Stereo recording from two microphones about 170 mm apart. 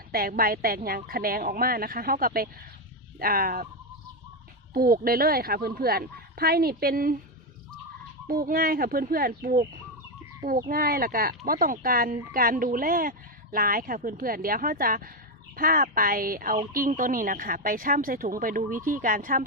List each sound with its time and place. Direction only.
0.1 s speech: 60° right (ahead or behind)
4.7 s speech: 60° right (ahead or behind)
8.3 s speech: 60° right (ahead or behind)